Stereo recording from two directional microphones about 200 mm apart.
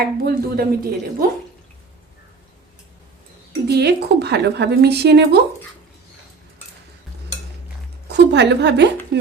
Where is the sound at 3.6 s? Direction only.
55° right (ahead or behind).